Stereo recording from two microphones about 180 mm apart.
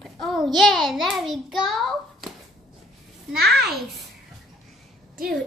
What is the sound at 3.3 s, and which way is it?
Speech, 60° right (ahead or behind).